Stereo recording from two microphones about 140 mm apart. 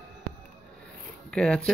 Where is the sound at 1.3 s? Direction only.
10° left (ahead or behind).